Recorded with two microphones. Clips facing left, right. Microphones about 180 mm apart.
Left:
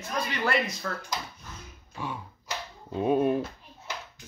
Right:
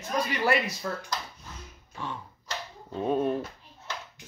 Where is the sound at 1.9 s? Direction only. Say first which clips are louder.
Left 1 dB; 10° left (ahead or behind).